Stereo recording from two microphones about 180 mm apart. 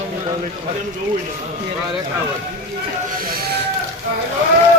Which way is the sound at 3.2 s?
55° right (ahead or behind).